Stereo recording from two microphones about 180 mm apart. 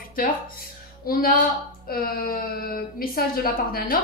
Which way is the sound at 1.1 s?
55° left (ahead or behind).